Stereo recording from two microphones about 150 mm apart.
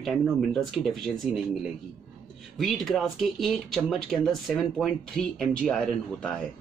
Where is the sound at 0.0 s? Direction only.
Centre (ahead or behind).